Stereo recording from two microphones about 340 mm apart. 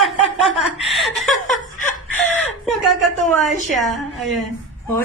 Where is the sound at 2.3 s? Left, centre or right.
Centre.